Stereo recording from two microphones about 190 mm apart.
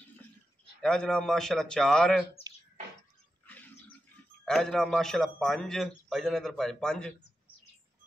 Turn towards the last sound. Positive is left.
turn(degrees=5)  # may be behind; listen again after turning